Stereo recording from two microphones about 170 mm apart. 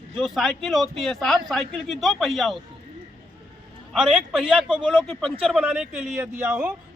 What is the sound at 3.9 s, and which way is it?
Speech, 5° right (ahead or behind).